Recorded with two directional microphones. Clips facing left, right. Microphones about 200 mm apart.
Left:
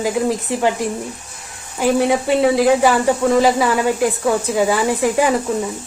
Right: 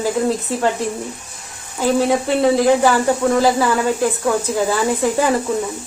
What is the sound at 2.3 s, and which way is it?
A woman's voice, 15° left (ahead or behind).